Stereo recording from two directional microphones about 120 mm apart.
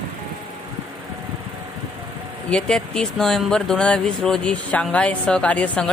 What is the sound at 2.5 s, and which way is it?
Speech, 10° left (ahead or behind).